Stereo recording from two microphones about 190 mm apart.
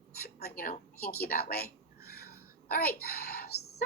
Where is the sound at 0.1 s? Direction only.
55° left (ahead or behind).